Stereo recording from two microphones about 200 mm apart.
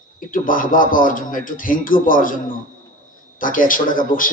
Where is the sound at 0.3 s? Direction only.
45° left (ahead or behind).